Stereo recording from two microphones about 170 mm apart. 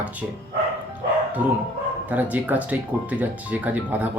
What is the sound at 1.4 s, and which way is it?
Speech, 10° right (ahead or behind).